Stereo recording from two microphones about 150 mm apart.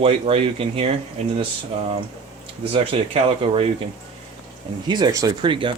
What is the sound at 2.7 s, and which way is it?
Speech, 40° right (ahead or behind).